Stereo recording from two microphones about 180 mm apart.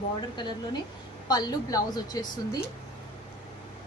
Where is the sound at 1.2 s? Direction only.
20° left (ahead or behind).